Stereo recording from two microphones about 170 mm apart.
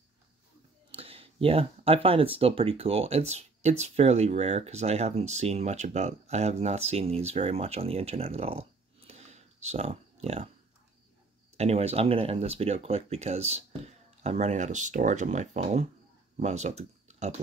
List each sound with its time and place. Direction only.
0.9 s speech: 35° right (ahead or behind)
11.5 s speech: 40° right (ahead or behind)